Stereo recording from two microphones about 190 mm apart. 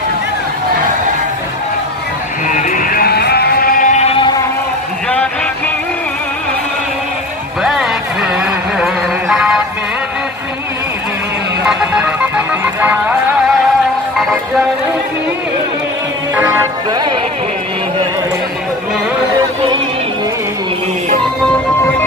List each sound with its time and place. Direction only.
2.4 s music: 45° left (ahead or behind); by 4.4 s 25° left (ahead or behind)
7.6 s a sound: centre (ahead or behind)
8.7 s music: 5° right (ahead or behind)
11.6 s music: 5° right (ahead or behind)